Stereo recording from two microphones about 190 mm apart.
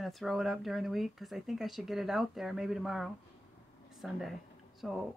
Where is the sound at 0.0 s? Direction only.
Centre (ahead or behind).